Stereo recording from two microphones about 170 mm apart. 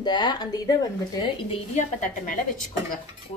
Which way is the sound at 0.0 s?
25° left (ahead or behind).